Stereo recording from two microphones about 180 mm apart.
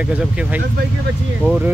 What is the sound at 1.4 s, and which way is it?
Speech, centre (ahead or behind).